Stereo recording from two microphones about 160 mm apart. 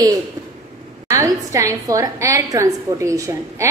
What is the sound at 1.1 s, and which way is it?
A woman's voice, 20° right (ahead or behind).